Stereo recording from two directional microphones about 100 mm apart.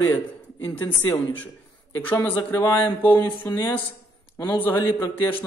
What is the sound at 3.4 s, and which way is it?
Speech, 30° left (ahead or behind).